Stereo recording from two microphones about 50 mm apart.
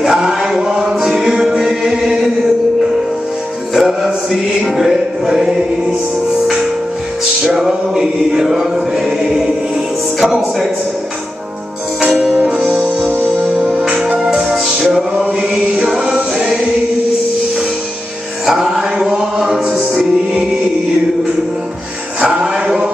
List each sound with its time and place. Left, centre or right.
0.0 s music: centre
3.7 s music: centre
7.4 s mantra: centre
12.4 s music: right; by 15.0 s centre
15.1 s chant: centre
18.4 s music: centre
22.4 s chant: centre